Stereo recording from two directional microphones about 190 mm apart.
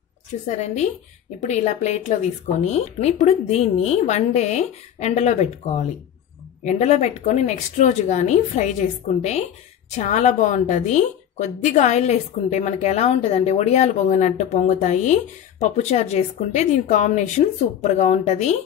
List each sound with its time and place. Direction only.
0.5 s a woman's voice: 35° left (ahead or behind)